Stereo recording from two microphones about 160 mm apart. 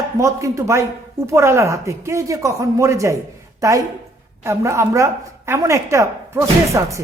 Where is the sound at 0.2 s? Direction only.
20° right (ahead or behind).